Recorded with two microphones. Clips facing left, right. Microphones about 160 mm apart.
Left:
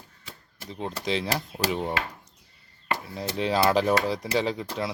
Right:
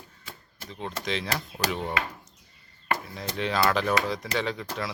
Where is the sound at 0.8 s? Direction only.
30° left (ahead or behind).